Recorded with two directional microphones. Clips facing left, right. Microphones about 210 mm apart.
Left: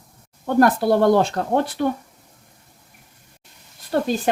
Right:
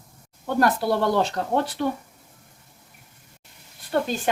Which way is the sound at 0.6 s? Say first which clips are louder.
Left 5 dB; 50° left (ahead or behind).